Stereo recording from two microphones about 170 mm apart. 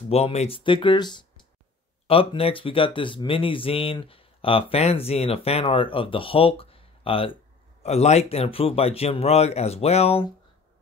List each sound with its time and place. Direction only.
0.1 s speech: 40° left (ahead or behind)